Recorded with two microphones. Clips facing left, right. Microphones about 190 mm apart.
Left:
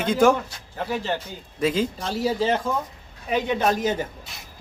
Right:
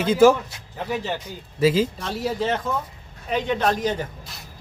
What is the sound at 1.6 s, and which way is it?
A man's voice, 5° right (ahead or behind).